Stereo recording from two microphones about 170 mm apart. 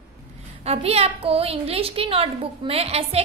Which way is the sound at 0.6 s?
35° right (ahead or behind).